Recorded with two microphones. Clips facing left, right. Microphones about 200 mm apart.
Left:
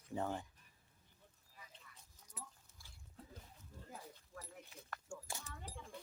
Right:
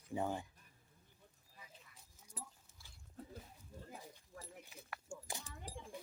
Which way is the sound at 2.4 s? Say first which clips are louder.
Right 2 dB; 35° right (ahead or behind).